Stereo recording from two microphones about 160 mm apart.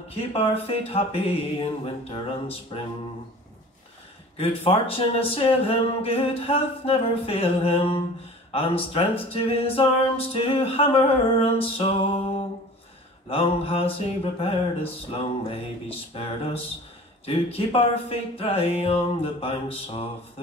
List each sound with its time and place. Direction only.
0.1 s speech: 40° left (ahead or behind)
4.4 s speech: 35° left (ahead or behind)